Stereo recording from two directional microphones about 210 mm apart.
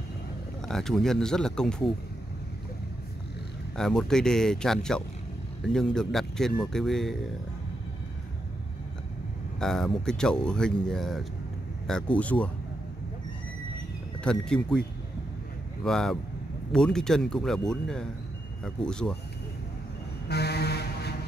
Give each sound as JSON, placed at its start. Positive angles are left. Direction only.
{"t": 0.7, "sound": "speech", "side_deg": 0}
{"t": 3.7, "sound": "speech", "side_deg": 5}
{"t": 9.6, "sound": "speech", "side_deg": 0}
{"t": 14.2, "sound": "speech", "side_deg": 5}
{"t": 20.2, "sound": "vehicle", "side_deg": 50}